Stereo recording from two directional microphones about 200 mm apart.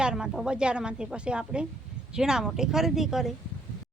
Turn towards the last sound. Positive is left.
turn(degrees=0)  # may be behind; listen again after turning